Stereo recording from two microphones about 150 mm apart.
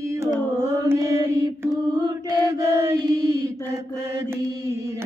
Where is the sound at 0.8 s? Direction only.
20° right (ahead or behind).